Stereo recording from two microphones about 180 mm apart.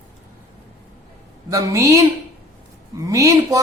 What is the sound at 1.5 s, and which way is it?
Speech, 20° right (ahead or behind).